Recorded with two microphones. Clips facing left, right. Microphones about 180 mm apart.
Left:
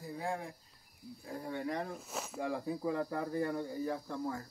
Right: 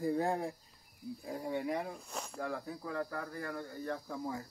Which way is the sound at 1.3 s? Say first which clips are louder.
Right 2 dB; 15° right (ahead or behind).